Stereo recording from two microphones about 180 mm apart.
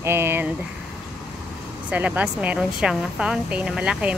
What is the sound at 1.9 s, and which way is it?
A woman's voice, 10° right (ahead or behind).